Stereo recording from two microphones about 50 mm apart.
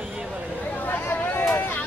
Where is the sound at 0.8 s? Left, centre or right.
Left.